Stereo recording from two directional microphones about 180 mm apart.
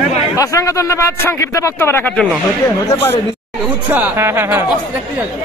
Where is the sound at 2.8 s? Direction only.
20° left (ahead or behind).